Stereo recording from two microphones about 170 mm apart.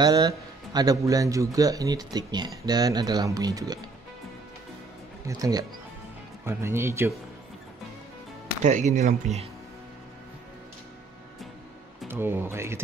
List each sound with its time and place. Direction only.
0.0 s a man's voice: 25° right (ahead or behind)
5.2 s a man's voice: 20° right (ahead or behind)
8.6 s speech: 45° right (ahead or behind)
12.1 s speech: 15° right (ahead or behind)